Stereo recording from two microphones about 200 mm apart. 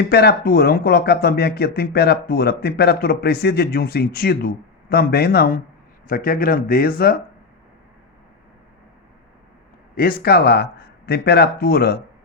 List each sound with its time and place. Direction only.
0.0 s speech: 50° left (ahead or behind)
9.9 s speech: 50° left (ahead or behind)